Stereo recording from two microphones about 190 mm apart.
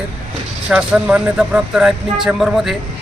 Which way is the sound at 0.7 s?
5° right (ahead or behind).